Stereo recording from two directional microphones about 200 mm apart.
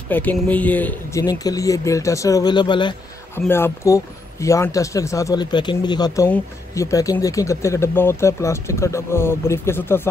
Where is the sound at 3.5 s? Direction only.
10° left (ahead or behind).